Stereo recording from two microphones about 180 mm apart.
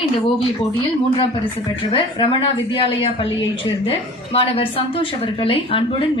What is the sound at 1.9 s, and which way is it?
Speech, 30° left (ahead or behind).